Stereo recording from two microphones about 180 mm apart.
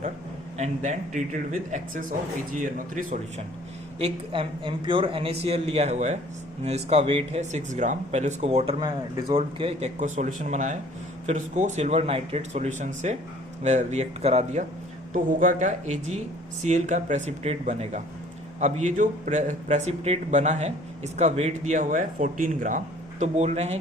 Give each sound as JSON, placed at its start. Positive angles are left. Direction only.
{"t": 0.5, "sound": "speech", "side_deg": -40}
{"t": 3.9, "sound": "a man's voice", "side_deg": -30}
{"t": 8.8, "sound": "speech", "side_deg": -25}
{"t": 10.0, "sound": "a man's voice", "side_deg": -45}